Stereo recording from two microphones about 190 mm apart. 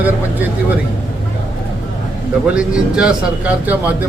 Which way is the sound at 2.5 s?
5° right (ahead or behind).